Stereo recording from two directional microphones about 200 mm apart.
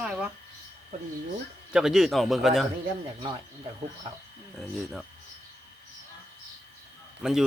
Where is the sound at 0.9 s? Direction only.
40° right (ahead or behind).